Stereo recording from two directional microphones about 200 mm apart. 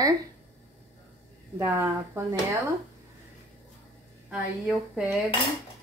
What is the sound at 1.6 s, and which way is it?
Speech, 15° right (ahead or behind).